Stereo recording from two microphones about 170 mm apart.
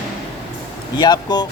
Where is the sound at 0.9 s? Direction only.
25° left (ahead or behind).